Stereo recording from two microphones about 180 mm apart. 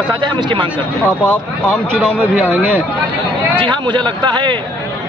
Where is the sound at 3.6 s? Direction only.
25° right (ahead or behind).